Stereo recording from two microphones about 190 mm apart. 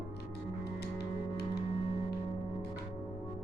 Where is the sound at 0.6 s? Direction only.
60° left (ahead or behind).